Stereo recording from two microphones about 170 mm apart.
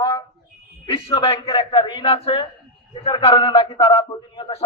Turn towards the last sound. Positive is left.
turn(degrees=30)  # may be behind; listen again after turning